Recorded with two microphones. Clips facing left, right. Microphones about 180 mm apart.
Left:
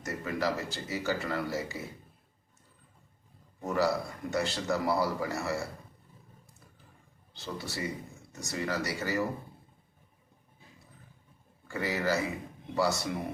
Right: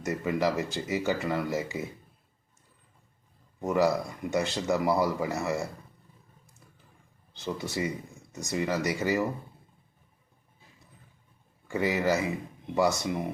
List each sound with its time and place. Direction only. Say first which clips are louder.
0.0 s speech: right 5 dB; 20° right (ahead or behind)
3.7 s speech: right 4 dB; 20° right (ahead or behind)
7.3 s speech: right 6 dB; 20° right (ahead or behind)
11.7 s speech: right 4 dB; 20° right (ahead or behind)